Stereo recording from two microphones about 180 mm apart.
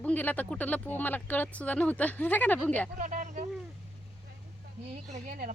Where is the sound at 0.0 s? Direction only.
10° left (ahead or behind).